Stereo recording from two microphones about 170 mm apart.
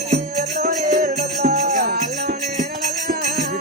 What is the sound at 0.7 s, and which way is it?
Music, 40° right (ahead or behind).